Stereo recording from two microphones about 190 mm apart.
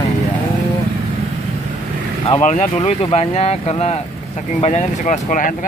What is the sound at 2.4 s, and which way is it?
Speech, 35° left (ahead or behind).